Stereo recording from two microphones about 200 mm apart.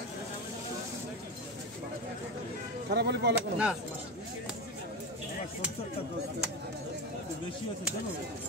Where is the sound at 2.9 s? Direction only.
55° right (ahead or behind).